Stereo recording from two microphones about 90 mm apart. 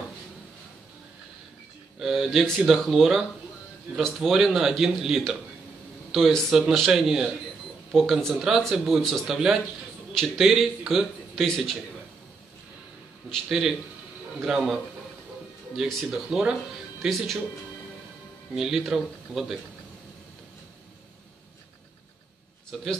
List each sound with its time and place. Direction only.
2.0 s a man's voice: 5° right (ahead or behind)
13.3 s a man's voice: 5° right (ahead or behind)
18.5 s a man's voice: 5° right (ahead or behind)
22.7 s a man's voice: 5° right (ahead or behind)